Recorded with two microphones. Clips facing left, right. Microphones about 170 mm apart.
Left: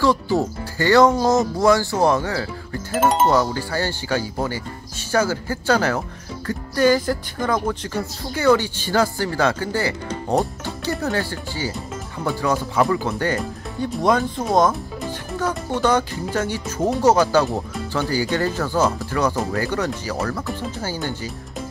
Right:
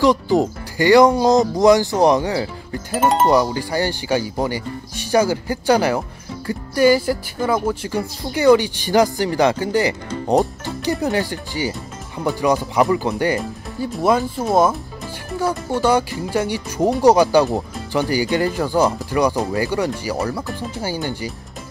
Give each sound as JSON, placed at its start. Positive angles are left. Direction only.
{"t": 0.0, "sound": "speech", "side_deg": -15}
{"t": 2.9, "sound": "speech", "side_deg": 0}
{"t": 3.3, "sound": "speech", "side_deg": -15}
{"t": 13.4, "sound": "speech", "side_deg": 0}